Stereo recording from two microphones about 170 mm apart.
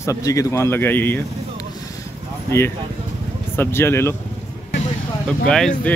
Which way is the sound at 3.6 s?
15° left (ahead or behind).